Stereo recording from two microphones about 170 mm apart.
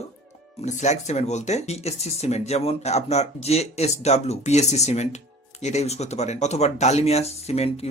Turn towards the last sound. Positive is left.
turn(degrees=40)  # may be behind; listen again after turning